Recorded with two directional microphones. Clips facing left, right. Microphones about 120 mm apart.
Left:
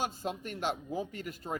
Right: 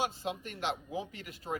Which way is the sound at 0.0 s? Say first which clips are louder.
Even; 45° left (ahead or behind).